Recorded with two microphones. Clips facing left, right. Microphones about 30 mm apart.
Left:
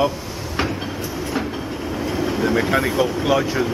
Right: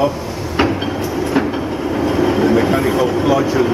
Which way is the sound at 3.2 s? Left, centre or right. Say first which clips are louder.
Right 3 dB; centre.